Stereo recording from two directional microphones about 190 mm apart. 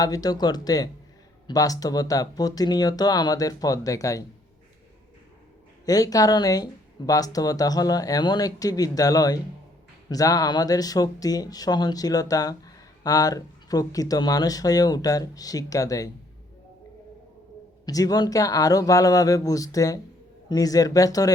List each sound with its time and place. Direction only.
0.0 s speech: 20° left (ahead or behind)
5.8 s speech: 20° left (ahead or behind)
17.8 s speech: 20° left (ahead or behind)